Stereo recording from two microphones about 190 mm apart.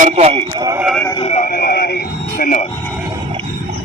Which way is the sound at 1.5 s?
50° left (ahead or behind).